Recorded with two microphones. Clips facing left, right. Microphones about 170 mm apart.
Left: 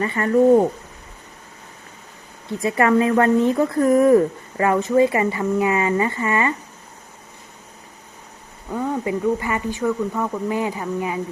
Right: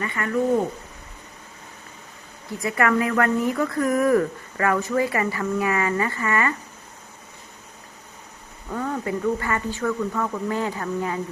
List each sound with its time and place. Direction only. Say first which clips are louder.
0.0 s speech: left 7 dB; 30° left (ahead or behind)
2.5 s speech: left 4 dB; 25° left (ahead or behind)
8.7 s speech: left 3 dB; 15° left (ahead or behind)